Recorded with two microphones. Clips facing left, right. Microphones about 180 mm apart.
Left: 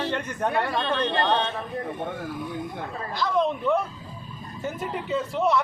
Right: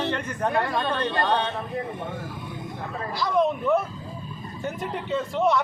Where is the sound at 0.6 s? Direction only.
15° right (ahead or behind).